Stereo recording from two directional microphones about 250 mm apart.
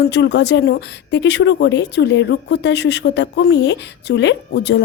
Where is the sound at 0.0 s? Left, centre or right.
Left.